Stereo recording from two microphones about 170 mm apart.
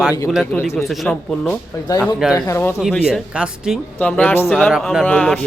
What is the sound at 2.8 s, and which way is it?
A man's voice, centre (ahead or behind).